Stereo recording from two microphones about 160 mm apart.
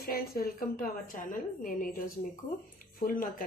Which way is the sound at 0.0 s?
70° left (ahead or behind).